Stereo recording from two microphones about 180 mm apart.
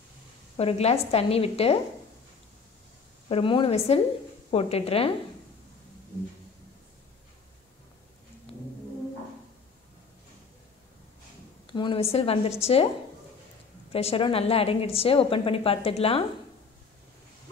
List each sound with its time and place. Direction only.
0.6 s a woman's voice: 35° left (ahead or behind)
3.3 s a woman's voice: 30° left (ahead or behind)
11.6 s a woman's voice: 25° left (ahead or behind)
13.9 s a woman's voice: 30° left (ahead or behind)